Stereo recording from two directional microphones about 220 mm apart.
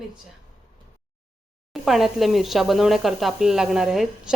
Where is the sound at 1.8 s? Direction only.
Centre (ahead or behind).